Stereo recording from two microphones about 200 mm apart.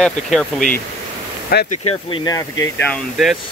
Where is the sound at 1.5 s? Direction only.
50° left (ahead or behind).